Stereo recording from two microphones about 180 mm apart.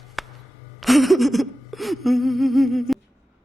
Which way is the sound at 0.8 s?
Centre (ahead or behind).